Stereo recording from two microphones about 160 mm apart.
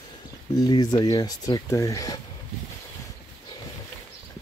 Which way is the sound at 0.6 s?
25° left (ahead or behind).